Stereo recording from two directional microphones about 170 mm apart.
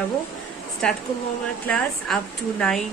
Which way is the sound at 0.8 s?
5° left (ahead or behind).